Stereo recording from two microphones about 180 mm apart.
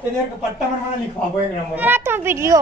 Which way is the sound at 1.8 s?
10° right (ahead or behind).